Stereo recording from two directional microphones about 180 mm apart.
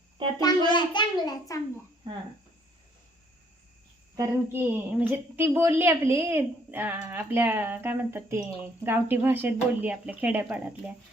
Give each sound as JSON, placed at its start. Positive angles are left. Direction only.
{"t": 0.3, "sound": "a child's voice", "side_deg": 25}
{"t": 4.2, "sound": "speech", "side_deg": -10}